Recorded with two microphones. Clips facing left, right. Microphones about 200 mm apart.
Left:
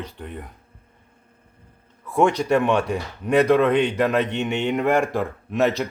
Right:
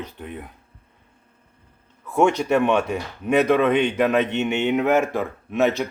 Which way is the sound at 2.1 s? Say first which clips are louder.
Even; 5° right (ahead or behind).